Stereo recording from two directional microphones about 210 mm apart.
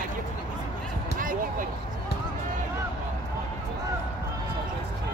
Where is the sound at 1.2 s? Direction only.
40° right (ahead or behind).